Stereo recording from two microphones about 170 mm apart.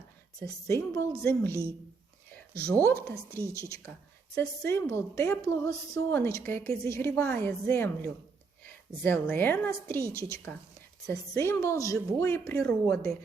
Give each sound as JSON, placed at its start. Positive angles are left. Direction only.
{"t": 0.4, "sound": "a woman's voice", "side_deg": 15}
{"t": 2.6, "sound": "a woman's voice", "side_deg": 5}